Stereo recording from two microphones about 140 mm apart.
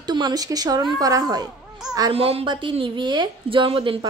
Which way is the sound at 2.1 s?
45° right (ahead or behind).